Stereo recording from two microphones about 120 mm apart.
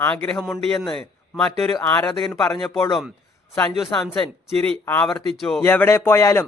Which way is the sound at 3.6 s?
5° left (ahead or behind).